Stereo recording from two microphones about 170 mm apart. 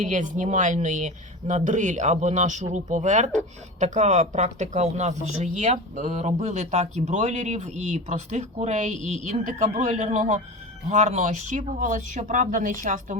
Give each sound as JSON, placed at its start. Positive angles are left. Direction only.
{"t": 0.0, "sound": "a man's voice", "side_deg": -50}